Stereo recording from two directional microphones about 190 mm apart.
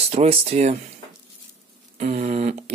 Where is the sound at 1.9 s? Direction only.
40° right (ahead or behind).